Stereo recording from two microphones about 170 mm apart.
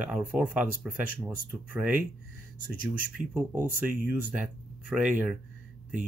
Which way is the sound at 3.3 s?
10° right (ahead or behind).